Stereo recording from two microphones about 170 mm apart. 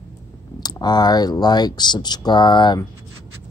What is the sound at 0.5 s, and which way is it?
Speech, 25° left (ahead or behind).